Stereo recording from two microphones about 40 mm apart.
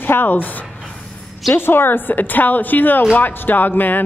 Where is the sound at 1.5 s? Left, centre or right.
Left.